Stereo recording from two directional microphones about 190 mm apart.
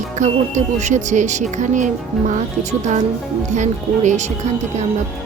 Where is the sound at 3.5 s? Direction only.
40° right (ahead or behind).